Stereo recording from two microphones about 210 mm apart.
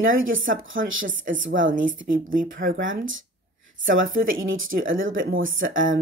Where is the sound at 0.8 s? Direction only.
40° right (ahead or behind).